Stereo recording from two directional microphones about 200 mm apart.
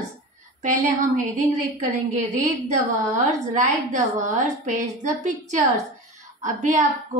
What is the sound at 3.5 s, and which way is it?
A woman's voice, 40° right (ahead or behind).